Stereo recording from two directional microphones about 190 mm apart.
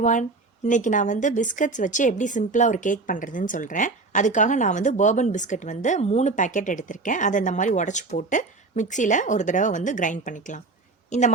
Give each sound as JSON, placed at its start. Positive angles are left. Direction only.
{"t": 0.0, "sound": "speech", "side_deg": 40}